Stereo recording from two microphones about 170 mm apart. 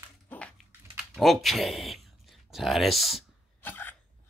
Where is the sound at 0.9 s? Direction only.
Centre (ahead or behind).